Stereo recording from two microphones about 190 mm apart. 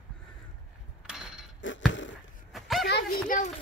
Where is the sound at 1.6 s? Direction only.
80° left.